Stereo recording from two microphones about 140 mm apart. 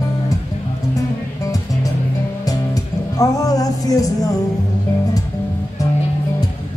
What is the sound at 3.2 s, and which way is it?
Music, 25° left (ahead or behind).